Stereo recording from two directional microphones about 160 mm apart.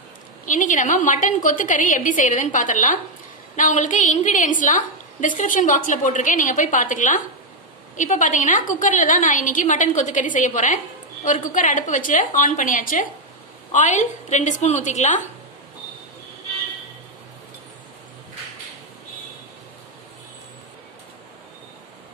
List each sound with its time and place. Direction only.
0.5 s a woman's voice: 55° left (ahead or behind)